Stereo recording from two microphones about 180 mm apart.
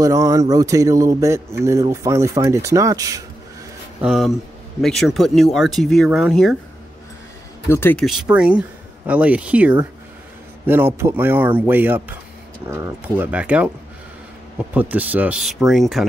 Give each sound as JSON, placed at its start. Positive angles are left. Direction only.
{"t": 0.0, "sound": "speech", "side_deg": -20}
{"t": 4.0, "sound": "speech", "side_deg": 0}
{"t": 7.6, "sound": "speech", "side_deg": 15}
{"t": 8.0, "sound": "speech", "side_deg": -5}